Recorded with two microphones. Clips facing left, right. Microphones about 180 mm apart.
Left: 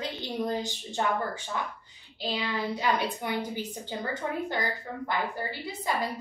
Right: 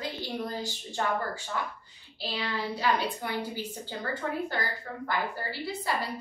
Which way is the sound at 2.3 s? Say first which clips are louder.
Left 2 dB; 15° left (ahead or behind).